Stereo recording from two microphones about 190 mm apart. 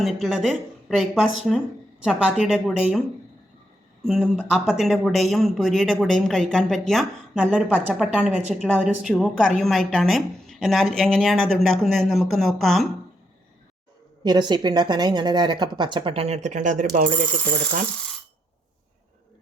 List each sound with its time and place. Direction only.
0.0 s speech: centre (ahead or behind)
4.0 s speech: centre (ahead or behind)
14.3 s speech: 25° right (ahead or behind); by 17.1 s 40° right (ahead or behind)